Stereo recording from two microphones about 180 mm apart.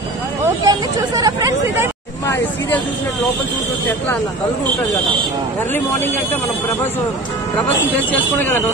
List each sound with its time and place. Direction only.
0.7 s chatter: 20° right (ahead or behind)
5.9 s speech: 10° left (ahead or behind)
8.4 s speech: 10° left (ahead or behind)